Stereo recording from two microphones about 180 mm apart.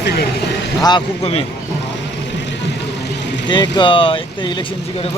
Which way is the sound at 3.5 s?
25° left (ahead or behind).